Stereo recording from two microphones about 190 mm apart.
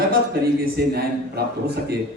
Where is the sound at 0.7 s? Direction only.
55° right (ahead or behind).